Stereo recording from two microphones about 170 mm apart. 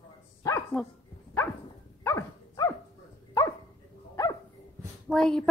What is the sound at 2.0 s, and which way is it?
Dog, 15° left (ahead or behind).